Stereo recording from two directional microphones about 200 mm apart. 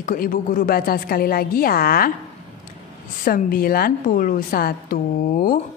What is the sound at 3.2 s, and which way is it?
A woman's voice, 45° left (ahead or behind).